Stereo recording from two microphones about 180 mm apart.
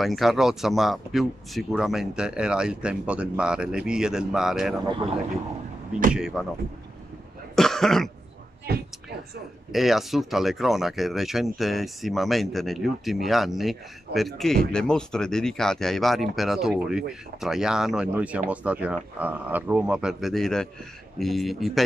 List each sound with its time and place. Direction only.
0.0 s speech: centre (ahead or behind)
6.1 s speech: 5° right (ahead or behind)
7.5 s cough: centre (ahead or behind)
8.7 s a woman's voice: 60° right (ahead or behind)
9.7 s speech: centre (ahead or behind)